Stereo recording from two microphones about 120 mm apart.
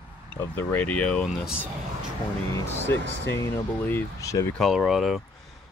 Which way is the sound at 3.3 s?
20° left (ahead or behind).